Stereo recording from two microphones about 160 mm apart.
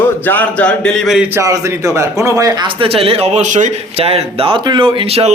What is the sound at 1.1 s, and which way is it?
A man's voice, 15° right (ahead or behind).